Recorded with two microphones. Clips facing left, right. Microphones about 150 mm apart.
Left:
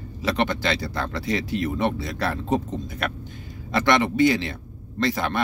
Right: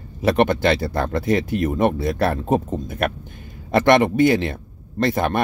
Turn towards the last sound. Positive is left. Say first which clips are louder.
# right 4 dB
turn(degrees=-50)  # may be behind; listen again after turning